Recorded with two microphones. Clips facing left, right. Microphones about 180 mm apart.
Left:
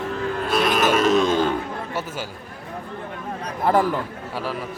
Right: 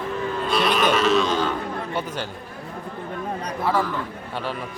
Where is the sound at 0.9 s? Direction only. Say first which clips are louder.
Left 2 dB; 50° left (ahead or behind).